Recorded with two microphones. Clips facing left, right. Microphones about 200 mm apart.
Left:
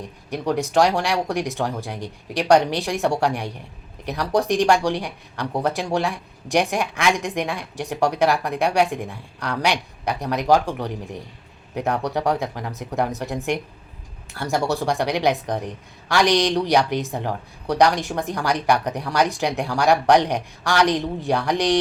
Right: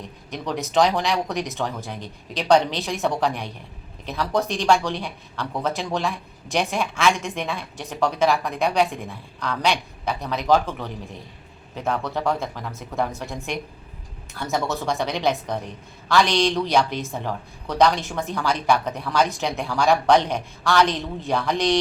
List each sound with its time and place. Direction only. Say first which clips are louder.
0.0 s speech: left 5 dB; 10° left (ahead or behind)